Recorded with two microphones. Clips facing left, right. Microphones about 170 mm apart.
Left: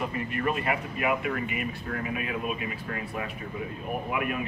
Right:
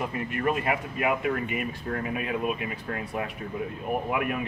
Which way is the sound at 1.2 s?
40° right (ahead or behind).